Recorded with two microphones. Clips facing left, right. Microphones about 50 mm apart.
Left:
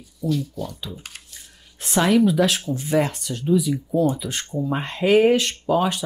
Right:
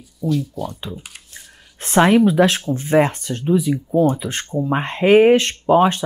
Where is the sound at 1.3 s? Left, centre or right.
Right.